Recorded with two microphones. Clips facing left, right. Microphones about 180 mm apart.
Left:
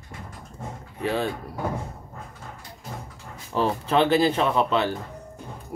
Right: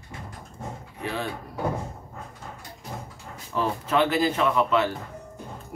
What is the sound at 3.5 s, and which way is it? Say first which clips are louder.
Speech: left 2 dB; 30° left (ahead or behind).